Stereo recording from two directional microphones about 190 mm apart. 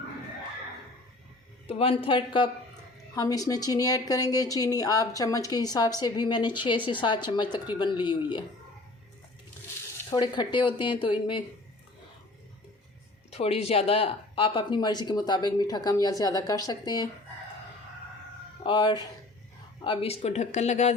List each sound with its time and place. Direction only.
1.6 s speech: 30° left (ahead or behind)
10.1 s speech: 25° left (ahead or behind)
13.3 s speech: 35° left (ahead or behind)
18.6 s speech: 25° left (ahead or behind)